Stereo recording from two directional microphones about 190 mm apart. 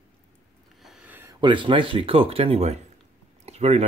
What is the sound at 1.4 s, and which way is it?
Speech, 25° right (ahead or behind).